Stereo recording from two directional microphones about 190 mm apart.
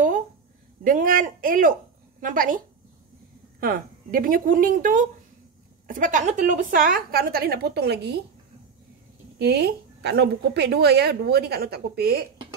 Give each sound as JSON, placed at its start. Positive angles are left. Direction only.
{"t": 0.8, "sound": "a woman's voice", "side_deg": -45}
{"t": 9.4, "sound": "a woman's voice", "side_deg": -60}